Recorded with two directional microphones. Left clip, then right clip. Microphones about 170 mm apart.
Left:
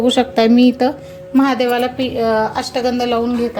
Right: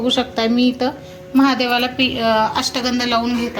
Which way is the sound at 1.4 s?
50° left (ahead or behind).